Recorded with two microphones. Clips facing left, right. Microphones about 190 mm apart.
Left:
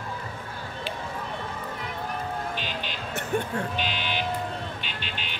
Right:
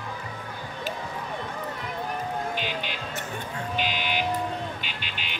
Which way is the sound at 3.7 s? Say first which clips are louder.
Right 2 dB; 10° right (ahead or behind).